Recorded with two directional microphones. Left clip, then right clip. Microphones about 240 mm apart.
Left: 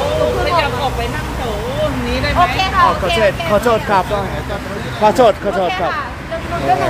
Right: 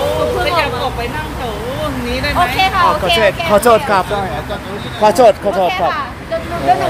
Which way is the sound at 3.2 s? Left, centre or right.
Centre.